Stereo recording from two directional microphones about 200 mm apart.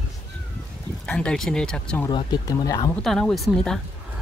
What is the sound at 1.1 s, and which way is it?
Speech, 5° left (ahead or behind).